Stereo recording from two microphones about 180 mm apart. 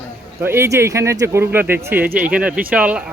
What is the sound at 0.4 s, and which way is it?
Speech, 15° right (ahead or behind).